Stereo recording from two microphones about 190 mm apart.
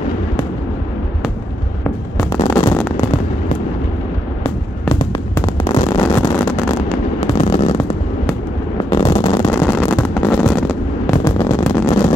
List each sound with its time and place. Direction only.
2.5 s fireworks: 10° left (ahead or behind)
4.4 s music: 30° left (ahead or behind)
5.3 s a sound: 20° left (ahead or behind)
6.4 s a sound: 10° left (ahead or behind)
7.3 s fireworks: 35° left (ahead or behind)
8.9 s machine gun: 25° left (ahead or behind)
9.5 s a sound: 10° left (ahead or behind)
10.2 s fireworks: 5° left (ahead or behind)
11.2 s vehicle: 15° left (ahead or behind)